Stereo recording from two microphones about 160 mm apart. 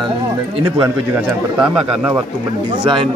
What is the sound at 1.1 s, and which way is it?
Speech, 5° right (ahead or behind).